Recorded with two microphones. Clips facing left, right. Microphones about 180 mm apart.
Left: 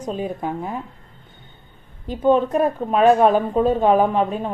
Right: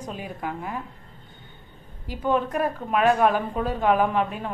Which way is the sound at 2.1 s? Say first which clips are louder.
Left 7 dB; 25° left (ahead or behind).